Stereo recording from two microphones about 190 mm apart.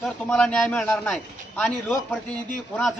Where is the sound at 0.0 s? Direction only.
5° left (ahead or behind).